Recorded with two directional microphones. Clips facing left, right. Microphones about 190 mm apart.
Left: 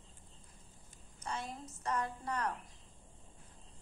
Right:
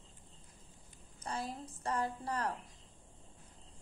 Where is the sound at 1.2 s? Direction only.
30° right (ahead or behind).